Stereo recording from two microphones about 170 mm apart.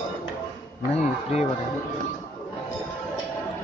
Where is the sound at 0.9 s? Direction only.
40° left (ahead or behind).